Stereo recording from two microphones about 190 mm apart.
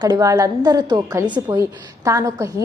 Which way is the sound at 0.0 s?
20° right (ahead or behind).